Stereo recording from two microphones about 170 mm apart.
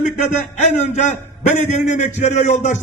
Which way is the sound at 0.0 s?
45° left (ahead or behind).